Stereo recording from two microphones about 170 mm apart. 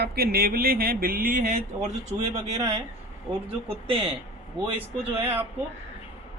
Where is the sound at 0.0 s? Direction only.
65° right (ahead or behind).